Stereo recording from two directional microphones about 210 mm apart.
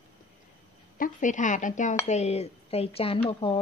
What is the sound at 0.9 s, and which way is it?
Speech, 40° left (ahead or behind).